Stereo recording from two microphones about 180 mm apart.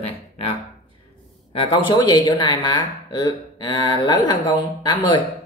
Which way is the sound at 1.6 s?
25° left (ahead or behind).